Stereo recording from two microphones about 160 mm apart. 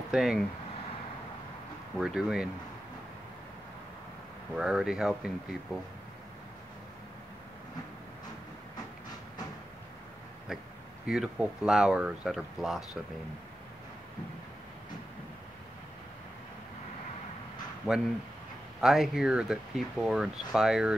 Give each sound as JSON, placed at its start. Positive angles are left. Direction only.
{"t": 0.1, "sound": "speech", "side_deg": -5}
{"t": 2.0, "sound": "speech", "side_deg": -5}
{"t": 4.6, "sound": "speech", "side_deg": -5}
{"t": 11.1, "sound": "speech", "side_deg": -5}
{"t": 17.9, "sound": "speech", "side_deg": -10}